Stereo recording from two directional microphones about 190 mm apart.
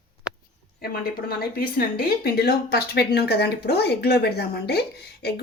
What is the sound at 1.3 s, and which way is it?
Speech, 50° left (ahead or behind).